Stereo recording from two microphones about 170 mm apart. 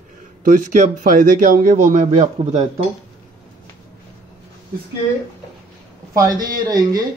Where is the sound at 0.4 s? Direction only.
45° right (ahead or behind).